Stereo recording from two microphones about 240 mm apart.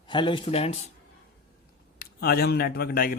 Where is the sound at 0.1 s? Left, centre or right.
Centre.